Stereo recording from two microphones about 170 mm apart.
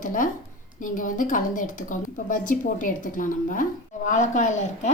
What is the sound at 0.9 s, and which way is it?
A woman's voice, 50° left (ahead or behind).